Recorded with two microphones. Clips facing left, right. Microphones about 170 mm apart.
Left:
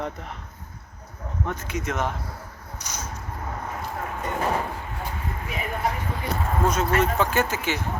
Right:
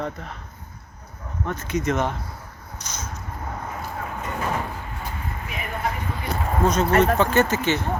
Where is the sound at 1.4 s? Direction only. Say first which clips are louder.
Right 5 dB; 15° left (ahead or behind).